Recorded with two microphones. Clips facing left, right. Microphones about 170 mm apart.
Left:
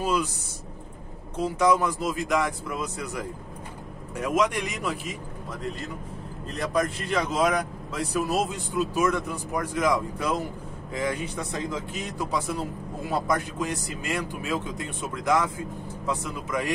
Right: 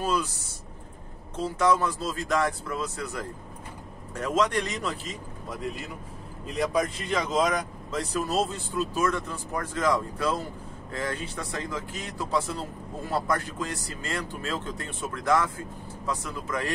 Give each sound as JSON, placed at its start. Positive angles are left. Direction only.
{"t": 0.0, "sound": "speech", "side_deg": 15}
{"t": 1.3, "sound": "speech", "side_deg": 15}
{"t": 6.5, "sound": "speech", "side_deg": 0}